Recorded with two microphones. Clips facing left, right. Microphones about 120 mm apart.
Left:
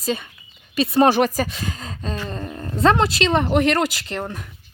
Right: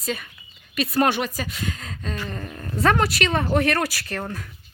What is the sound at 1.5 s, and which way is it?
Speech, 30° left (ahead or behind).